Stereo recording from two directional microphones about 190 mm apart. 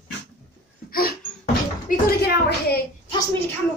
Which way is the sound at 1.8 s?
55° left (ahead or behind).